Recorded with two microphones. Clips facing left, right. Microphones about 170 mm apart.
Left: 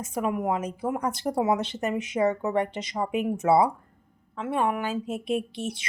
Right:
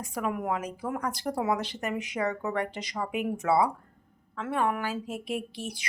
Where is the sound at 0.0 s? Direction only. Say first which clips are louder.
Left 4 dB; 20° left (ahead or behind).